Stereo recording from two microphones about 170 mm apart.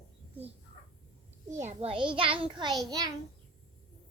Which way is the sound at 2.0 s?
30° right (ahead or behind).